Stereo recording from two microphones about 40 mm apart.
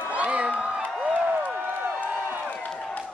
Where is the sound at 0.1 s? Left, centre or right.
Right.